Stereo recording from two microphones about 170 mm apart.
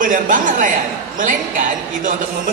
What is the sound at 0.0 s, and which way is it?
Speech, 50° right (ahead or behind).